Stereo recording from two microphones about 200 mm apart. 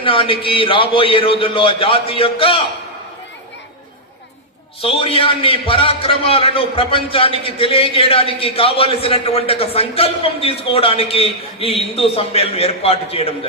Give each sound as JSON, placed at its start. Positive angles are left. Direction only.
{"t": 0.0, "sound": "a man's voice", "side_deg": 25}
{"t": 4.8, "sound": "a man's voice", "side_deg": 30}